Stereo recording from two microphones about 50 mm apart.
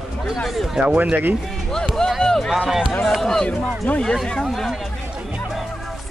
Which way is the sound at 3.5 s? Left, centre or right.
Left.